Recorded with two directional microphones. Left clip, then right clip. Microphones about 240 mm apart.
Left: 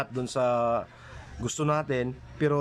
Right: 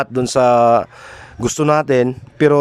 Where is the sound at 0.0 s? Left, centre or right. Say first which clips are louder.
Right 13 dB; right.